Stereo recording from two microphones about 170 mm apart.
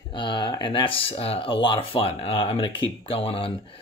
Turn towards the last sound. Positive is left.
turn(degrees=35)  # may be behind; listen again after turning